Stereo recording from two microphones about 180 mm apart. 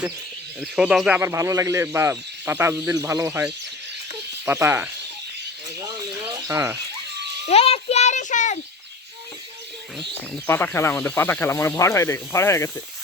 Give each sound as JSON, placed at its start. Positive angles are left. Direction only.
{"t": 0.6, "sound": "speech", "side_deg": -5}
{"t": 1.2, "sound": "speech", "side_deg": -15}
{"t": 6.3, "sound": "a sound", "side_deg": -15}
{"t": 7.4, "sound": "a child's voice", "side_deg": 35}
{"t": 10.0, "sound": "speech", "side_deg": 10}